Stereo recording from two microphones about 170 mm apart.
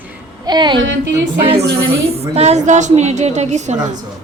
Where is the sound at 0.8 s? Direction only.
90° right.